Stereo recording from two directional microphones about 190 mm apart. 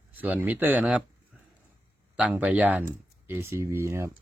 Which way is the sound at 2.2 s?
5° right (ahead or behind).